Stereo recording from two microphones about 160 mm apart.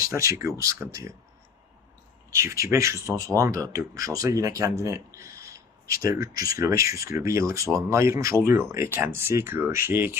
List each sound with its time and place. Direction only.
0.0 s speech: 20° right (ahead or behind)
2.3 s speech: 20° right (ahead or behind)